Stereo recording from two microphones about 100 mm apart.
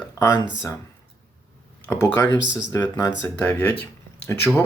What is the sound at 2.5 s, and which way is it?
Speech, 35° left (ahead or behind).